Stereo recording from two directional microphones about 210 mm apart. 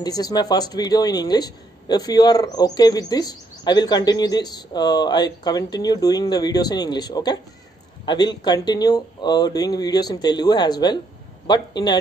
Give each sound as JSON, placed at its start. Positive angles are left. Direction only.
{"t": 0.0, "sound": "speech", "side_deg": 20}